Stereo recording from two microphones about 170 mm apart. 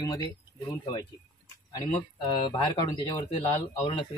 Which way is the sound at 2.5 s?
25° left (ahead or behind).